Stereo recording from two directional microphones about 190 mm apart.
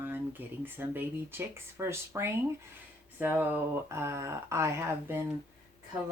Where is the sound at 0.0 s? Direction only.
10° right (ahead or behind).